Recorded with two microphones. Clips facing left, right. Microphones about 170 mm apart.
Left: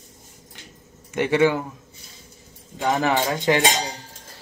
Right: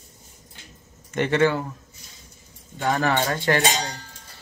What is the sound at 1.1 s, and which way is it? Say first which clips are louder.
Speech: left 1 dB; 10° left (ahead or behind).